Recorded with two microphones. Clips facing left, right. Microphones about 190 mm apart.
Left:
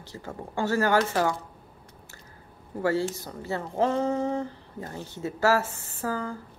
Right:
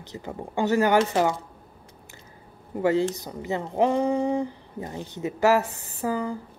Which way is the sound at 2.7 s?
20° right (ahead or behind).